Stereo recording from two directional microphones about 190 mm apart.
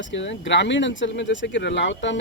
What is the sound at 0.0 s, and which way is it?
Speech, 75° left (ahead or behind).